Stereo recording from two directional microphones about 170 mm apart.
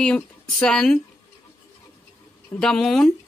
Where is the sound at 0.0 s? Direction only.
5° left (ahead or behind).